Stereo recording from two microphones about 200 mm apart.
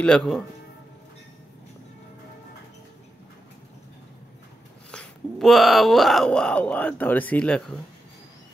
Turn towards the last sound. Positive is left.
turn(degrees=5)  # may be behind; listen again after turning